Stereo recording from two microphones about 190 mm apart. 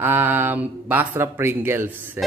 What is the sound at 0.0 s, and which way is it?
Speech, 10° right (ahead or behind).